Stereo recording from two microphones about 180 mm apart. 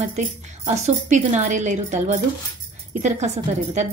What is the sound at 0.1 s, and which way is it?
Speech, 40° right (ahead or behind).